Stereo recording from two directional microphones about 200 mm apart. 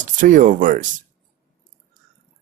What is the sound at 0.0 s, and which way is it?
Speech, 40° right (ahead or behind).